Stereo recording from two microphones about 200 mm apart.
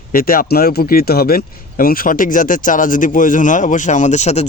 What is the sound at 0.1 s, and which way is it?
Speech, 45° left (ahead or behind).